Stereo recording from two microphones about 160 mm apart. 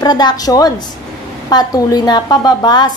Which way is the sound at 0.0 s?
25° left (ahead or behind).